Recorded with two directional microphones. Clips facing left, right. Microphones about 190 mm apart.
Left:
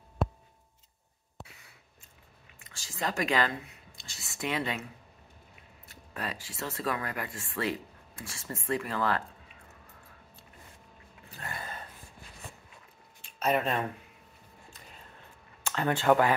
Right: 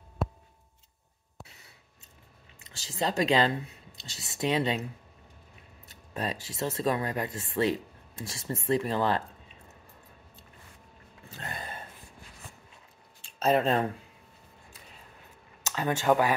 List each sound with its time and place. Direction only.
2.8 s speech: 20° right (ahead or behind)
6.1 s speech: 25° right (ahead or behind)
11.2 s a sound: 20° right (ahead or behind)
13.2 s speech: 30° right (ahead or behind)
15.7 s speech: 10° right (ahead or behind)